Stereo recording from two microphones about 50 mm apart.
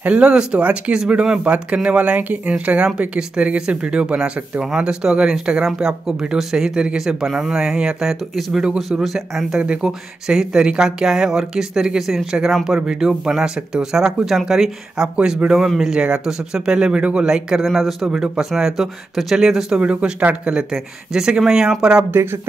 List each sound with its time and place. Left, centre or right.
0.0 s speech: right; by 9.6 s centre
9.6 s speech: centre
17.6 s speech: centre
18.0 s speech: centre
19.8 s speech: right
22.1 s speech: right